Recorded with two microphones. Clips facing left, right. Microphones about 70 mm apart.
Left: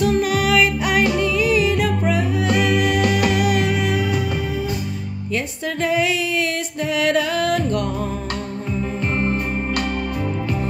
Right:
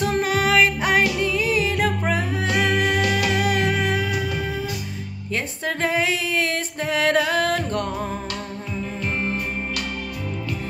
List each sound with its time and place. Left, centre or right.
0.0 s music: right
5.3 s music: right